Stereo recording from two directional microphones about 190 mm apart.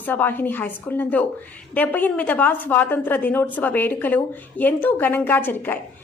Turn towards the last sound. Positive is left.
turn(degrees=10)  # may be behind; listen again after turning